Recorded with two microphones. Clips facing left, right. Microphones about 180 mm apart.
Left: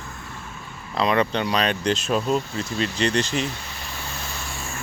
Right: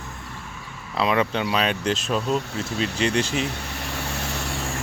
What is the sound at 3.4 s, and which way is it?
Vehicle, 65° right (ahead or behind).